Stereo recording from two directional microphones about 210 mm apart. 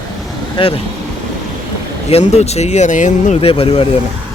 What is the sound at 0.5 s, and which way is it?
Speech, 25° left (ahead or behind).